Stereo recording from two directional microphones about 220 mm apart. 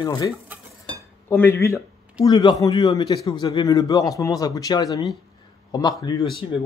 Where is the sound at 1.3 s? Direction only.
10° left (ahead or behind).